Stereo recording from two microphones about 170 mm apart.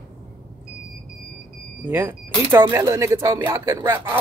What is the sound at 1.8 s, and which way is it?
Speech, 10° right (ahead or behind).